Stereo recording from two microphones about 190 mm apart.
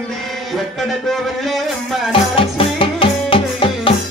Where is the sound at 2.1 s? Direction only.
30° left (ahead or behind).